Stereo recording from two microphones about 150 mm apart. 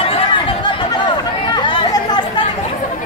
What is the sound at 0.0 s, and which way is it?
Chatter, 35° left (ahead or behind).